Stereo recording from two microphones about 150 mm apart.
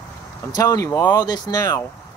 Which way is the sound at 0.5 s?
25° left (ahead or behind).